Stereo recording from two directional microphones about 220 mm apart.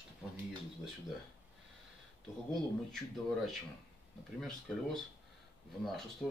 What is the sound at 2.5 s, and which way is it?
Speech, centre (ahead or behind).